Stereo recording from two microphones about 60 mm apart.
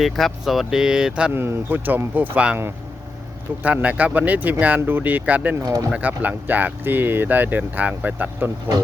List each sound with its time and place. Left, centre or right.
0.0 s speech: centre
1.3 s speech: right
3.6 s speech: right
5.5 s speech: right
5.9 s speech: right